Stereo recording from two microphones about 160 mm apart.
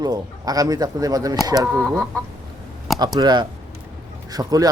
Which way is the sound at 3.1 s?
25° right (ahead or behind).